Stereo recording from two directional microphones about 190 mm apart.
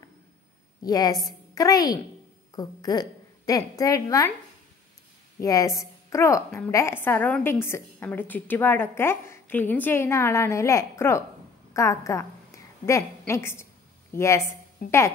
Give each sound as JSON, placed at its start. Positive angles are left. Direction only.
{"t": 0.8, "sound": "a woman's voice", "side_deg": 20}
{"t": 5.4, "sound": "a woman's voice", "side_deg": 20}
{"t": 14.8, "sound": "speech", "side_deg": 50}